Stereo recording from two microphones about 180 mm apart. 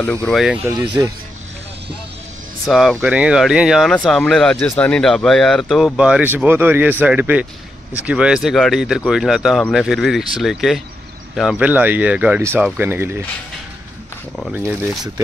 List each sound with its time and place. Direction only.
0.0 s speech: 10° left (ahead or behind)
0.7 s speech: 20° right (ahead or behind)
2.6 s speech: centre (ahead or behind)
14.5 s speech: 10° right (ahead or behind)